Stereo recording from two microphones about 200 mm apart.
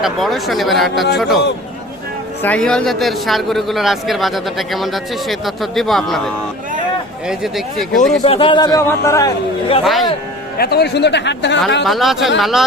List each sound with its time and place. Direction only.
0.0 s speech: centre (ahead or behind)
2.4 s speech: 5° left (ahead or behind)
8.2 s a man's voice: 30° left (ahead or behind)
9.8 s speech: centre (ahead or behind)
10.6 s speech: 50° left (ahead or behind)
11.9 s speech: centre (ahead or behind)